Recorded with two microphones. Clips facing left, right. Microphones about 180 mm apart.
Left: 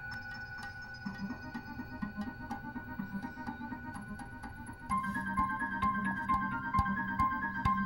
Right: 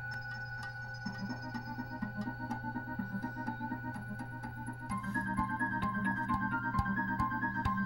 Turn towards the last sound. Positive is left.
turn(degrees=-45)  # may be behind; listen again after turning